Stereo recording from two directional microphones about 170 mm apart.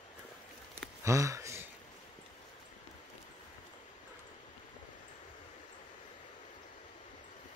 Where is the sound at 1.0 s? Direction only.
20° right (ahead or behind).